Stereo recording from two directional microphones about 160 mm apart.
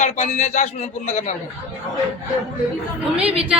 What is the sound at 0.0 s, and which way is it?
Speech, 50° left (ahead or behind).